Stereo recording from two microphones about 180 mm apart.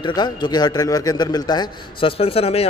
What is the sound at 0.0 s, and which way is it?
A man's voice, 25° left (ahead or behind).